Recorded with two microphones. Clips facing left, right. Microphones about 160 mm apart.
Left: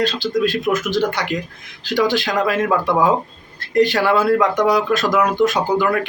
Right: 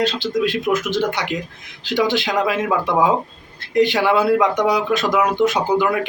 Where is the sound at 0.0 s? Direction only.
20° right (ahead or behind).